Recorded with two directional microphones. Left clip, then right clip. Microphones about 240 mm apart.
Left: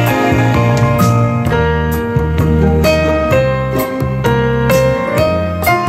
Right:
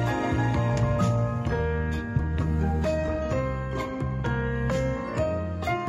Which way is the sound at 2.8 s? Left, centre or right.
Left.